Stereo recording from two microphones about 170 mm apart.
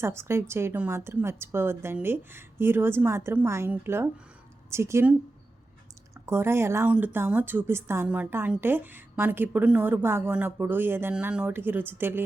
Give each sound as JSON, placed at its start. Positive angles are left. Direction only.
{"t": 0.0, "sound": "a woman's voice", "side_deg": -15}
{"t": 6.2, "sound": "a woman's voice", "side_deg": -15}